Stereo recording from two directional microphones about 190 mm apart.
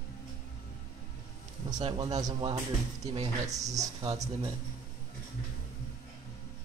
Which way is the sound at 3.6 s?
20° right (ahead or behind).